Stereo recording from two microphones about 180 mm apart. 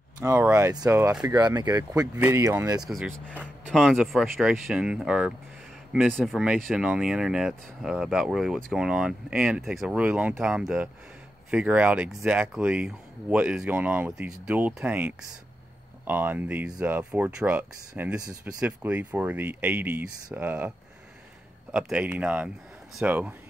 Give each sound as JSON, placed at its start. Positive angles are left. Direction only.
{"t": 0.2, "sound": "speech", "side_deg": -15}
{"t": 2.9, "sound": "speech", "side_deg": 0}
{"t": 21.7, "sound": "speech", "side_deg": -5}